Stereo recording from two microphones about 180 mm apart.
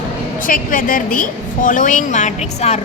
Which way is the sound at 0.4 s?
50° left (ahead or behind).